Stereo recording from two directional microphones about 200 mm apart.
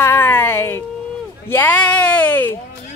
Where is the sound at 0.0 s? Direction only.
10° left (ahead or behind).